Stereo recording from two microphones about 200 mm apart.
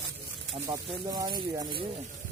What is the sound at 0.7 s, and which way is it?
Speech, 25° right (ahead or behind).